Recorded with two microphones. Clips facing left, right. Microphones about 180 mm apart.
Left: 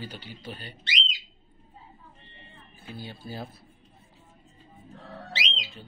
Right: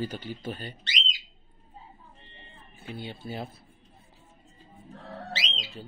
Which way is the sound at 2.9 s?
25° right (ahead or behind).